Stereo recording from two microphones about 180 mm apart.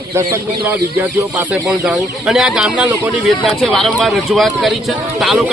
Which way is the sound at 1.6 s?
5° right (ahead or behind).